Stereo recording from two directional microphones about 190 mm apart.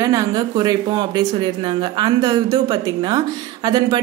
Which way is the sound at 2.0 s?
20° right (ahead or behind).